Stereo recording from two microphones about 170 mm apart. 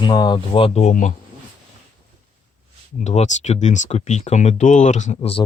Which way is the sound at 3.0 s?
45° left (ahead or behind).